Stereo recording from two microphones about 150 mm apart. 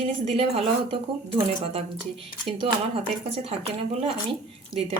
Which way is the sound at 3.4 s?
40° right (ahead or behind).